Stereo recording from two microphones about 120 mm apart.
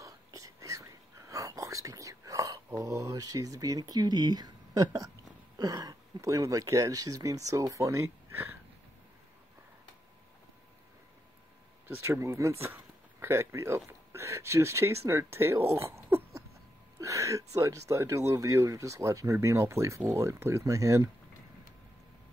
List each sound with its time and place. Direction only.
0.0 s whispering: 30° right (ahead or behind)
4.8 s speech: 30° right (ahead or behind)
11.9 s speech: 20° right (ahead or behind)